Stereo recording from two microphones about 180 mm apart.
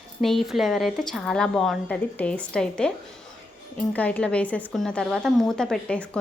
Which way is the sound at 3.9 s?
5° left (ahead or behind).